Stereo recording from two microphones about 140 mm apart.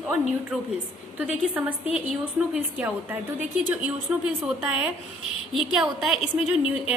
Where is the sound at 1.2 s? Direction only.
10° right (ahead or behind).